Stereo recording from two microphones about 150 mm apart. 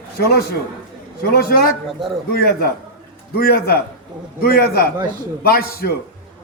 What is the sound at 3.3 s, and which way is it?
A man's voice, 90° left.